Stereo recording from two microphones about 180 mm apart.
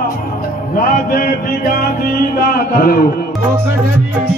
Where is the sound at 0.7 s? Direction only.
50° left (ahead or behind).